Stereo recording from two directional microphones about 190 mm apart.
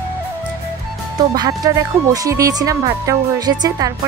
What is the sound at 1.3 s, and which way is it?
Speech, 20° right (ahead or behind).